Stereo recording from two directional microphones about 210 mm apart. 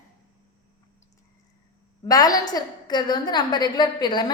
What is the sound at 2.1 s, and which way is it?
A woman's voice, 20° left (ahead or behind).